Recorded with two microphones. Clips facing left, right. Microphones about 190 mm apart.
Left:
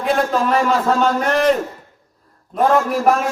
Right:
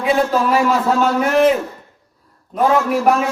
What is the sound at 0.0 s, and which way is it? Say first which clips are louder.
A man's voice: right 2 dB; centre (ahead or behind).